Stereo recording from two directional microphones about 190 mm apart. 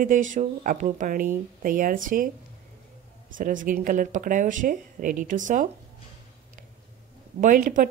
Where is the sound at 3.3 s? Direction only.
45° right (ahead or behind).